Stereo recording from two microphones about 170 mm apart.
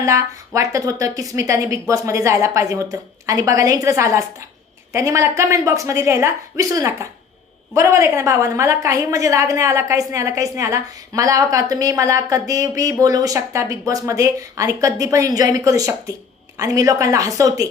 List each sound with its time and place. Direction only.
0.0 s a woman's voice: 15° right (ahead or behind)